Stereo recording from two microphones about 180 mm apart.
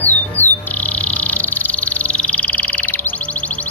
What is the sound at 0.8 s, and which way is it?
Music, 10° left (ahead or behind).